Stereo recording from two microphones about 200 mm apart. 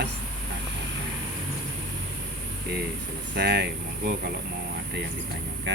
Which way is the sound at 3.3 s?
55° right (ahead or behind).